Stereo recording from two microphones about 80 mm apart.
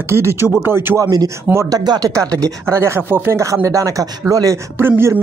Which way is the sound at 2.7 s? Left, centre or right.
Right.